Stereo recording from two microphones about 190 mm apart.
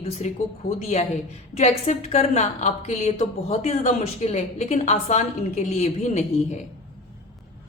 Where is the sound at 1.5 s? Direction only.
35° left (ahead or behind).